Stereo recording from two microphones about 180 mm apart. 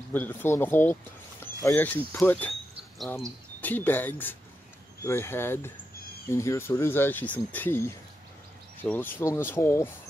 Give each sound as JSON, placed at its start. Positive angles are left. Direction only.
{"t": 0.1, "sound": "speech", "side_deg": 10}
{"t": 3.6, "sound": "speech", "side_deg": 10}